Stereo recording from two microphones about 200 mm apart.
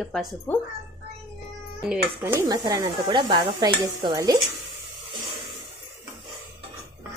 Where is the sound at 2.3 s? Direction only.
20° right (ahead or behind).